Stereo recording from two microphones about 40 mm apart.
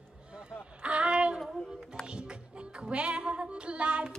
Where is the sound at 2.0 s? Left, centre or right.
Right.